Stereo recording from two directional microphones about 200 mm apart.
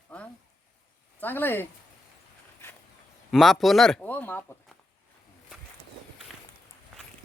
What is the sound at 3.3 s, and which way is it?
Speech, centre (ahead or behind).